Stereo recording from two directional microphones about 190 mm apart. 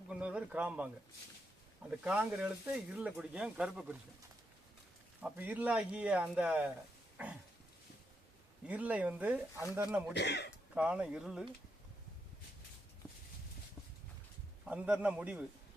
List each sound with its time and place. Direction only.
0.1 s a man's voice: 5° right (ahead or behind)
2.0 s speech: 5° right (ahead or behind)
5.2 s speech: 10° right (ahead or behind)
8.6 s speech: 5° right (ahead or behind)
10.2 s speech: 60° left (ahead or behind)
10.8 s speech: 5° right (ahead or behind)
14.6 s speech: 5° right (ahead or behind)